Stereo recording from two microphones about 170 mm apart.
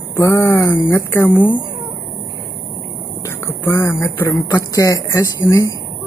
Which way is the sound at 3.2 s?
15° left (ahead or behind).